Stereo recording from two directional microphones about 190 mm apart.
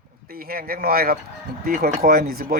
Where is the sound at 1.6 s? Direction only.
50° right (ahead or behind).